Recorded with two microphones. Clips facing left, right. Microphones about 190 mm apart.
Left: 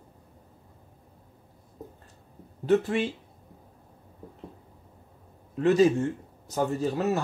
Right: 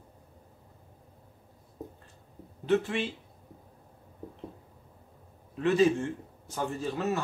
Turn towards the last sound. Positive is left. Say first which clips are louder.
# left 5 dB
turn(degrees=40)  # may be behind; listen again after turning